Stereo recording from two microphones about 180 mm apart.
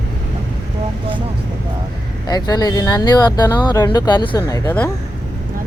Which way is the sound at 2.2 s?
20° left (ahead or behind).